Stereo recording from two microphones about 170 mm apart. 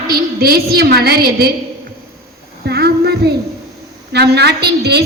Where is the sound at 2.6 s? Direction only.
70° right (ahead or behind).